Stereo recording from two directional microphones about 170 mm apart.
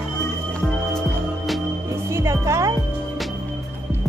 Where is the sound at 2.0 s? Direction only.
15° right (ahead or behind).